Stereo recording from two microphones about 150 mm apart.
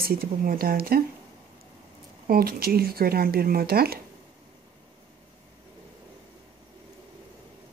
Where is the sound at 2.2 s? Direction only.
85° right.